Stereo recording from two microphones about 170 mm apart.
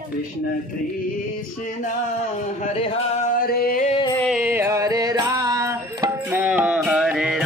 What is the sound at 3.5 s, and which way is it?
Music, 60° left (ahead or behind).